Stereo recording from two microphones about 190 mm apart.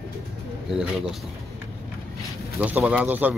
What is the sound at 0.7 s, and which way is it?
Speech, 5° right (ahead or behind).